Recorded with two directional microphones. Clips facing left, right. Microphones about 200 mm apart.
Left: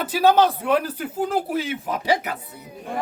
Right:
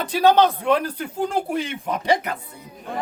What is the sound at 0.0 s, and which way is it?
Speech, 5° left (ahead or behind).